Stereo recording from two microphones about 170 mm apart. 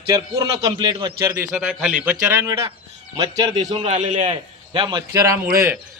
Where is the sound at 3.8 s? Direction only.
50° right (ahead or behind).